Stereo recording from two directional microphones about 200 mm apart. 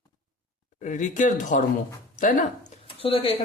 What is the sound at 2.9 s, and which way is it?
Speech, 25° left (ahead or behind).